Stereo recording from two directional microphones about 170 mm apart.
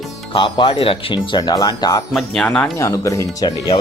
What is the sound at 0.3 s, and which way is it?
Speech, 30° left (ahead or behind).